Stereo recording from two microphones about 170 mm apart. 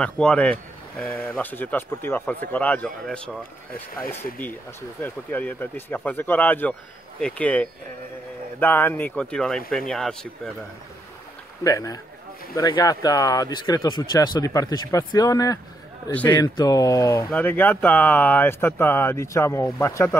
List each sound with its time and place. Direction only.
0.0 s speech: 5° left (ahead or behind)
11.6 s speech: 20° left (ahead or behind)
16.1 s speech: 10° left (ahead or behind)
16.3 s speech: 20° left (ahead or behind)